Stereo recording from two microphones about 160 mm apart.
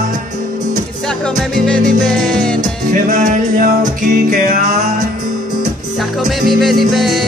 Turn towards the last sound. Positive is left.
turn(degrees=0)  # may be behind; listen again after turning